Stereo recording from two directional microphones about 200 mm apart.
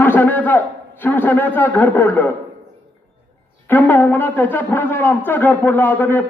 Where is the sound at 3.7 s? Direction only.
10° left (ahead or behind).